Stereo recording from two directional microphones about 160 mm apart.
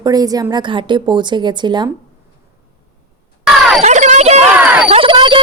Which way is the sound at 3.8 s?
45° right (ahead or behind).